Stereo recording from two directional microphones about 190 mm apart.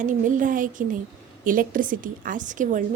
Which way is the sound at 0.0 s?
45° right (ahead or behind).